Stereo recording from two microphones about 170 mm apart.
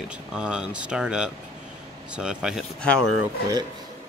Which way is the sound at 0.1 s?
5° right (ahead or behind).